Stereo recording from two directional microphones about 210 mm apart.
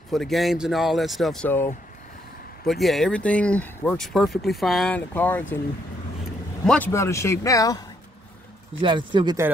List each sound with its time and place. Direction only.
0.1 s speech: centre (ahead or behind)
6.6 s speech: 5° left (ahead or behind)
8.8 s speech: 20° right (ahead or behind)